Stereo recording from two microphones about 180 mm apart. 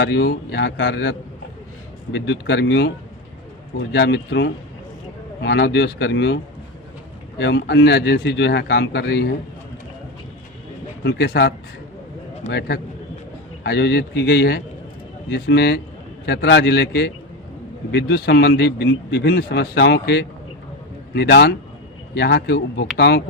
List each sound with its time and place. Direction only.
0.0 s a man's voice: 65° left (ahead or behind)
2.1 s a man's voice: 75° left (ahead or behind)
11.0 s a man's voice: 70° left (ahead or behind)